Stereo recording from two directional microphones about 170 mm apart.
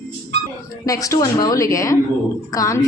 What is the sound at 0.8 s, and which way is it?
A woman's voice, 20° left (ahead or behind).